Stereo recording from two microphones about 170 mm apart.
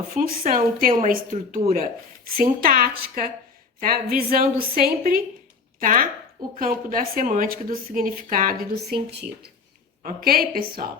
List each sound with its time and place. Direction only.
0.1 s a woman's voice: 60° right (ahead or behind)
10.0 s a woman's voice: 55° right (ahead or behind)